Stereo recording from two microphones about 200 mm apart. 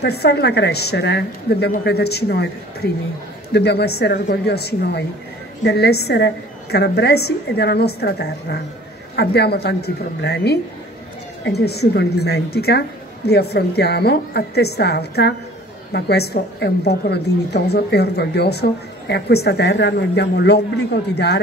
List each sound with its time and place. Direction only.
0.0 s a woman's voice: 55° left (ahead or behind)